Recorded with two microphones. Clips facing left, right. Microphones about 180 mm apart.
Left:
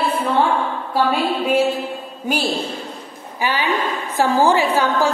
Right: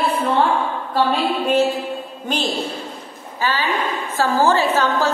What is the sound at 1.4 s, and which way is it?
A woman's voice, 10° left (ahead or behind).